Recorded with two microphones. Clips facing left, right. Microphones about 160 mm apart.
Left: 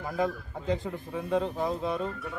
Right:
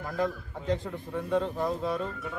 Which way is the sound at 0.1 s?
5° left (ahead or behind).